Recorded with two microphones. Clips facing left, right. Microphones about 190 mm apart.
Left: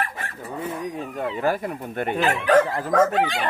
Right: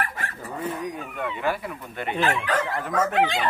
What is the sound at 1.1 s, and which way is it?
Speech, 35° left (ahead or behind).